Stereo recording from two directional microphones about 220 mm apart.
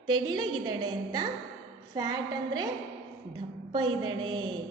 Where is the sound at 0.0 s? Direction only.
20° right (ahead or behind).